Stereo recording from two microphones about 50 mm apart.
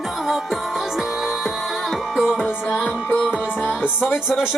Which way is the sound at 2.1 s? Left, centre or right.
Centre.